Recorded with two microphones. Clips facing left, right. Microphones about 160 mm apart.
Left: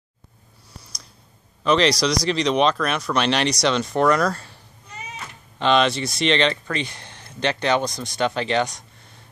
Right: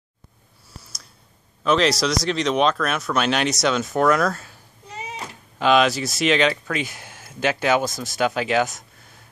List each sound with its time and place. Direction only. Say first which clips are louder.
1.6 s speech: left 1 dB; centre (ahead or behind)
4.9 s a sound: right 4 dB; 30° right (ahead or behind)
5.6 s speech: right 1 dB; 5° right (ahead or behind)